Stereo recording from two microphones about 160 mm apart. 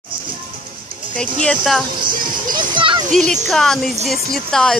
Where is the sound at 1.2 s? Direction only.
5° left (ahead or behind).